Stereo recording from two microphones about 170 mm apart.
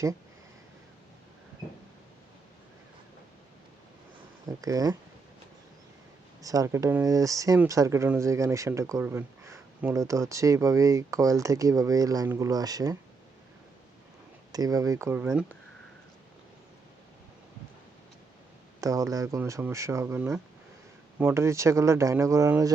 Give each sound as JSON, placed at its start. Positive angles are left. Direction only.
{"t": 4.4, "sound": "speech", "side_deg": -20}
{"t": 6.4, "sound": "speech", "side_deg": -20}
{"t": 14.5, "sound": "speech", "side_deg": -20}
{"t": 18.8, "sound": "speech", "side_deg": -20}